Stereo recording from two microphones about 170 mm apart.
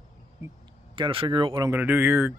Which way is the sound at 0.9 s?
30° right (ahead or behind).